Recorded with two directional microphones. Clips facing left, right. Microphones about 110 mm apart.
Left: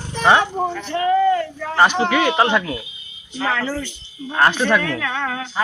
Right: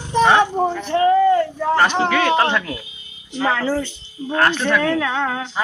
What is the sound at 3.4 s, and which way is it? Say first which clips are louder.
Speech: right 3 dB; 15° right (ahead or behind).